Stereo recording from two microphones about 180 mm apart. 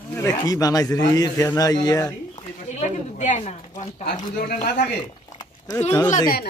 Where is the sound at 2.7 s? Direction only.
40° left (ahead or behind).